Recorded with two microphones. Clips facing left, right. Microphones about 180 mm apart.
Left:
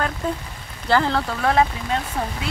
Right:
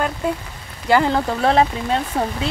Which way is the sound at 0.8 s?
15° right (ahead or behind).